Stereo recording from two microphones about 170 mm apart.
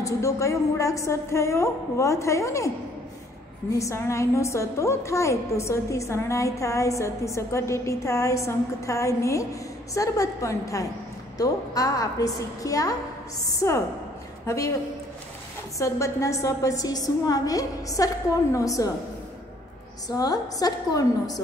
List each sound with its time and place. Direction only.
0.0 s a woman's voice: 15° left (ahead or behind)
3.7 s a woman's voice: 15° left (ahead or behind)
15.8 s a woman's voice: 20° left (ahead or behind)
20.1 s a woman's voice: 20° left (ahead or behind)